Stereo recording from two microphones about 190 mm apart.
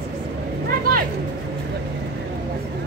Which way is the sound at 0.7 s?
50° right (ahead or behind).